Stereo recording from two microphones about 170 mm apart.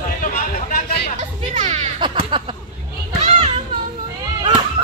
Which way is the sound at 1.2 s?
45° right (ahead or behind).